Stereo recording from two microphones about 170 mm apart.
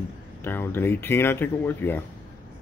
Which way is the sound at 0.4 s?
15° left (ahead or behind).